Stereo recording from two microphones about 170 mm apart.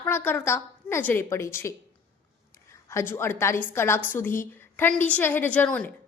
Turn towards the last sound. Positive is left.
turn(degrees=10)  # may be behind; listen again after turning